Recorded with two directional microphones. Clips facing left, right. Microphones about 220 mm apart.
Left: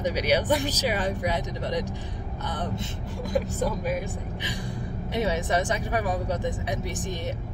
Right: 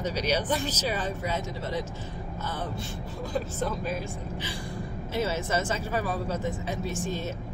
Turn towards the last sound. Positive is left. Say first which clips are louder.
# even
turn(degrees=15)  # may be behind; listen again after turning